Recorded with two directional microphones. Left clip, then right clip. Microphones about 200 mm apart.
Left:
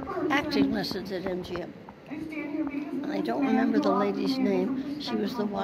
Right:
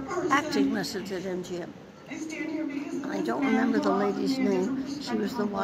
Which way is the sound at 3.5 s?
20° left (ahead or behind).